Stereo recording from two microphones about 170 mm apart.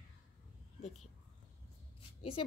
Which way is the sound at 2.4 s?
30° left (ahead or behind).